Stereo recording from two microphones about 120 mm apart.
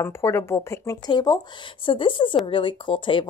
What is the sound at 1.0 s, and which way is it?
A woman's voice, 35° left (ahead or behind).